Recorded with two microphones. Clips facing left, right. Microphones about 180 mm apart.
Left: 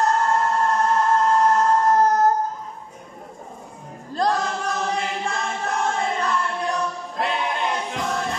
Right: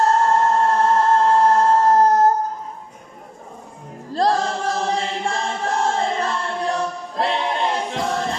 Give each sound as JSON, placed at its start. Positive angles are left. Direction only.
{"t": 0.0, "sound": "choir", "side_deg": -30}
{"t": 4.1, "sound": "choir", "side_deg": -30}